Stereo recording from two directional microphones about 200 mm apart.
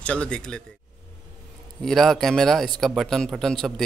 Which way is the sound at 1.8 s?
Centre (ahead or behind).